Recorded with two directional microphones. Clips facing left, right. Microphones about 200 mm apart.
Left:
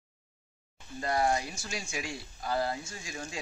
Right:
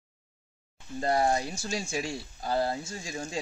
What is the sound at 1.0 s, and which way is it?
Speech, 30° right (ahead or behind).